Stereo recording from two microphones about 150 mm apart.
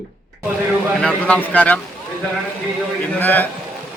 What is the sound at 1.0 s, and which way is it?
Speech, 5° left (ahead or behind).